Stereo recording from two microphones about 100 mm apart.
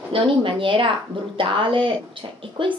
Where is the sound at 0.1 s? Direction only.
60° right (ahead or behind).